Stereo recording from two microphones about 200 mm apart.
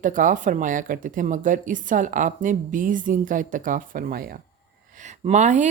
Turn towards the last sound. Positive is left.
turn(degrees=-35)  # may be behind; listen again after turning